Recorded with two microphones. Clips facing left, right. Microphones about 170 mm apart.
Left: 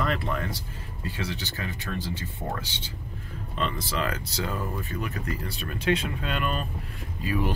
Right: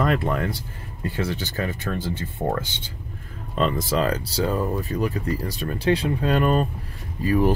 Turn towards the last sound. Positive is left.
turn(degrees=-45)  # may be behind; listen again after turning